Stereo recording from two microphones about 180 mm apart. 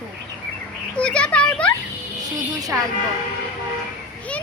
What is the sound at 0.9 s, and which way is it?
Speech, 5° left (ahead or behind).